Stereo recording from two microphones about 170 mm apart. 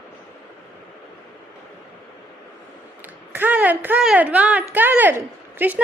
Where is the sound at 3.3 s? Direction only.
10° right (ahead or behind).